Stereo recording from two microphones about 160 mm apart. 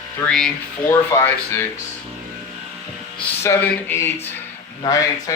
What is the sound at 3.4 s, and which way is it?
Speech, 15° left (ahead or behind).